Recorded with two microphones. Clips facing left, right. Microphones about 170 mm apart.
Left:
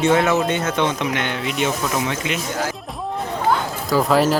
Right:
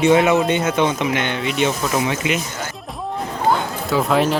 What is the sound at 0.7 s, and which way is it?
Speech, 5° right (ahead or behind).